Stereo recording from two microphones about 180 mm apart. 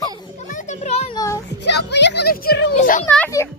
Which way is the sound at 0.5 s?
40° left (ahead or behind).